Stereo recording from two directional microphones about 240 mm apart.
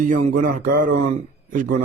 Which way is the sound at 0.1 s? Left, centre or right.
Right.